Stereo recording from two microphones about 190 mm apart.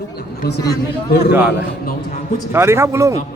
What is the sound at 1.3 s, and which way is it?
Speech, 10° right (ahead or behind).